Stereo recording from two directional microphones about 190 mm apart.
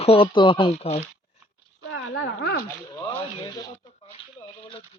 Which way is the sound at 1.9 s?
70° left (ahead or behind).